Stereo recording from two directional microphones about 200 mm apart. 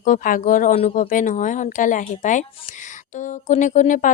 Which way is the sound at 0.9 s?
40° left (ahead or behind).